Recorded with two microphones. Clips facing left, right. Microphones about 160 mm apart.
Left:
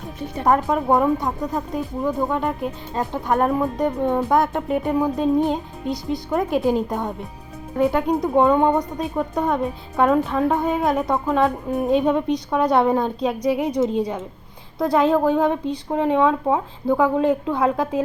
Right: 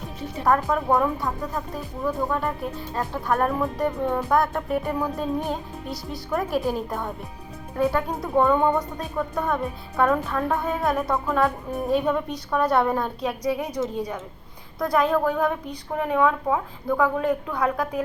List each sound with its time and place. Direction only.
0.4 s speech: 20° left (ahead or behind)
6.3 s speech: 20° left (ahead or behind)